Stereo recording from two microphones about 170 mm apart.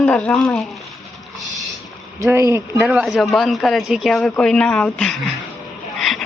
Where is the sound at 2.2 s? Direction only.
15° right (ahead or behind).